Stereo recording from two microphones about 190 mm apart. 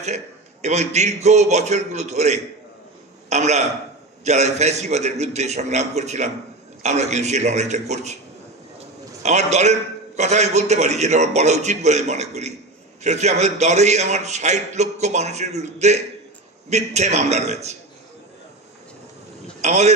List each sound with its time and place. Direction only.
0.0 s a man's voice: 35° right (ahead or behind)
9.2 s a man's voice: 35° right (ahead or behind)
19.6 s speech: 35° right (ahead or behind)